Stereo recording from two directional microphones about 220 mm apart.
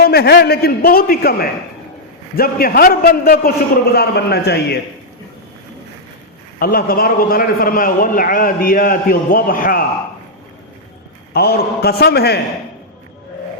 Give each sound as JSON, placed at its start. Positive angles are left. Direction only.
{"t": 0.0, "sound": "a man's voice", "side_deg": 45}
{"t": 6.6, "sound": "a man's voice", "side_deg": 40}
{"t": 11.3, "sound": "a man's voice", "side_deg": 45}